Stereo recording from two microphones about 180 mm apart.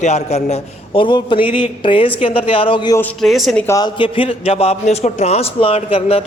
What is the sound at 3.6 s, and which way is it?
A man's voice, 20° left (ahead or behind).